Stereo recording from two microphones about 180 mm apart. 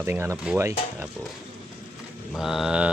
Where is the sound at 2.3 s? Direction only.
Centre (ahead or behind).